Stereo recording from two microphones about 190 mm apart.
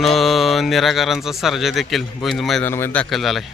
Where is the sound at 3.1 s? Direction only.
Centre (ahead or behind).